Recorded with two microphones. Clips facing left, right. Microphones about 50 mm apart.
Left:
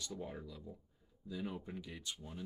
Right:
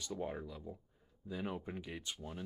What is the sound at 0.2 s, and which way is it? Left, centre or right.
Speech, right.